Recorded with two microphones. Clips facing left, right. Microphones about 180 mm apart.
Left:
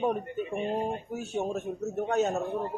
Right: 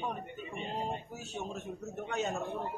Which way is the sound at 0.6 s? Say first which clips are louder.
Left 6 dB; 60° left (ahead or behind).